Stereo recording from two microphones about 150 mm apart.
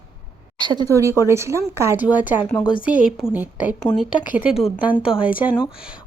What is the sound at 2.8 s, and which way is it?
Speech, 10° right (ahead or behind).